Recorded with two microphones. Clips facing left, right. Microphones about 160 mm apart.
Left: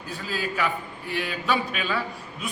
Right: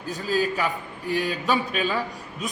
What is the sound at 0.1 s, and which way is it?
A man's voice, 40° right (ahead or behind).